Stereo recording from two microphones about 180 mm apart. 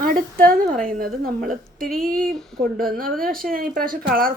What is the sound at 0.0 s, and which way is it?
A woman's voice, 55° right (ahead or behind).